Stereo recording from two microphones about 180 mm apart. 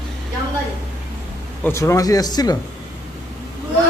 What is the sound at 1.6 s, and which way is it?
Speech, 15° left (ahead or behind).